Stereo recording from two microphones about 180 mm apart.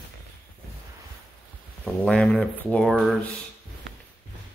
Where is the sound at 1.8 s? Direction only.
5° left (ahead or behind).